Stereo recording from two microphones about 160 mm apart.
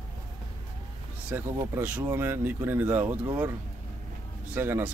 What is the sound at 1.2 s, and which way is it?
Speech, 15° right (ahead or behind).